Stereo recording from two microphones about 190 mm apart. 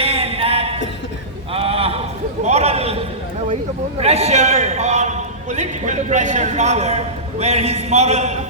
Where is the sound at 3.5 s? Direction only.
35° right (ahead or behind).